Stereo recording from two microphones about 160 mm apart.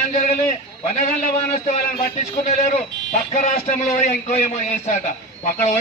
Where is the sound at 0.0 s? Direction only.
50° left (ahead or behind).